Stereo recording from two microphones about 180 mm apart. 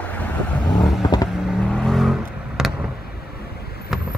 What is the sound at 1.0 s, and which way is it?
Vehicle, 25° left (ahead or behind).